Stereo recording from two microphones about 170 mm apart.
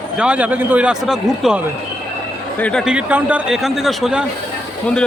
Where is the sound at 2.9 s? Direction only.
10° right (ahead or behind).